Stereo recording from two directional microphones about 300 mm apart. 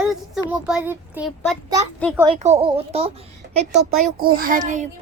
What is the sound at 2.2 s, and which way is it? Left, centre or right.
Speech, centre.